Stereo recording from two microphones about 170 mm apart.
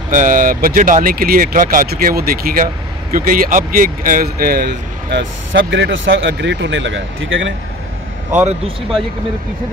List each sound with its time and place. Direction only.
0.1 s speech: 50° right (ahead or behind); by 7.5 s 90° right
8.3 s speech: 45° right (ahead or behind)